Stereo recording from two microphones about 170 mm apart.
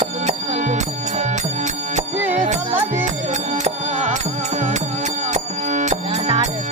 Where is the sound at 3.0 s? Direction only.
45° right (ahead or behind).